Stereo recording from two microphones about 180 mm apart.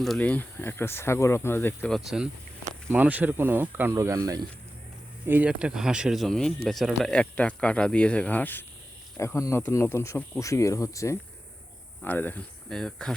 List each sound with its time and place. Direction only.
0.0 s speech: 5° left (ahead or behind)
2.0 s speech: 5° right (ahead or behind)